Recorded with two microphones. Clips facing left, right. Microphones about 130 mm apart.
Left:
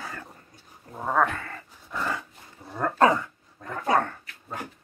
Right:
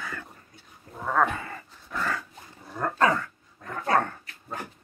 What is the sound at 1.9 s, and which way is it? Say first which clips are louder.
Dog: even; 15° left (ahead or behind).